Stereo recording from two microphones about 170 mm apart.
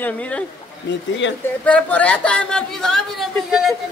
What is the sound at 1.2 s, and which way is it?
Speech, 90° left.